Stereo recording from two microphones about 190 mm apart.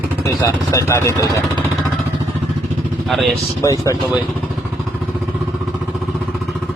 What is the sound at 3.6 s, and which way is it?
Speech, 15° left (ahead or behind).